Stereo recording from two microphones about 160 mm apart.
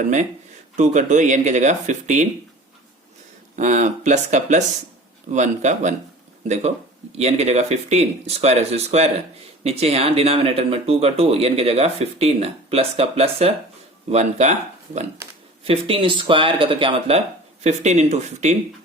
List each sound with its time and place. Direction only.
0.0 s speech: 50° right (ahead or behind)
3.5 s speech: 50° right (ahead or behind)
15.6 s speech: 35° right (ahead or behind)